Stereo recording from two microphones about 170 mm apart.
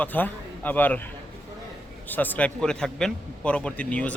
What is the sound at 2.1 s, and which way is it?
A man's voice, 10° left (ahead or behind).